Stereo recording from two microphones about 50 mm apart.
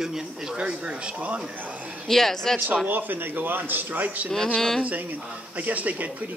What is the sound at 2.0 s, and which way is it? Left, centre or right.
Speech, centre.